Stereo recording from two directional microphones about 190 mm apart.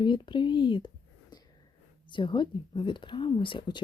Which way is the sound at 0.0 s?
25° left (ahead or behind).